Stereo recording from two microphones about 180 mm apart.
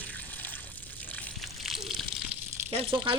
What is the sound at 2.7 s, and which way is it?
Speech, 30° right (ahead or behind).